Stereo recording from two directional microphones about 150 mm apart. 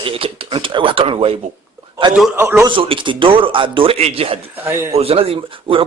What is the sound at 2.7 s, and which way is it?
A man's voice, 35° right (ahead or behind).